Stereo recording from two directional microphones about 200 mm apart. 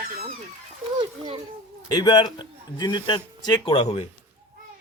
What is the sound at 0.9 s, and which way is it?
Children playing, 25° right (ahead or behind).